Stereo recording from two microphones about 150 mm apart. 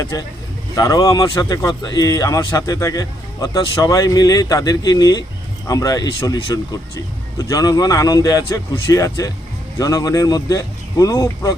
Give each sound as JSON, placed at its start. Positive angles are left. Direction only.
{"t": 0.0, "sound": "speech", "side_deg": 25}